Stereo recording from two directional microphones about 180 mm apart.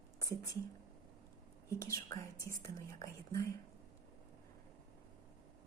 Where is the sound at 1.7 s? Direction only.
15° left (ahead or behind).